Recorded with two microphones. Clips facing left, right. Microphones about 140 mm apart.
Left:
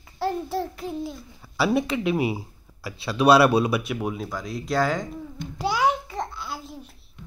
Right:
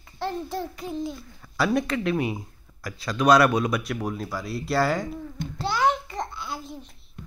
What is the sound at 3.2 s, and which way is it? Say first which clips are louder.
Speech: left 2 dB; 30° left (ahead or behind).